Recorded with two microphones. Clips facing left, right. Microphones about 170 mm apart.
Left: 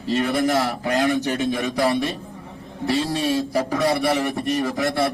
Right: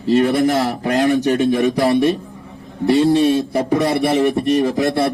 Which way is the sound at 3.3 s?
25° right (ahead or behind).